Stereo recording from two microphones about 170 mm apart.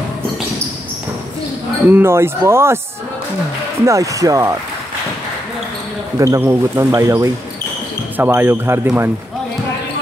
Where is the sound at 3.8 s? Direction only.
20° right (ahead or behind).